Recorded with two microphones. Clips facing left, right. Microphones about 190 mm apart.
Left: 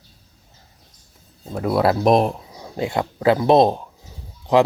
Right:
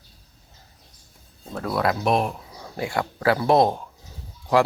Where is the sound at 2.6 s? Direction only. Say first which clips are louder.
Left 3 dB; 20° left (ahead or behind).